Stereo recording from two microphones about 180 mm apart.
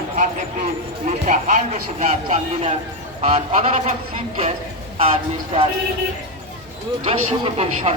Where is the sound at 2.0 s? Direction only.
40° right (ahead or behind).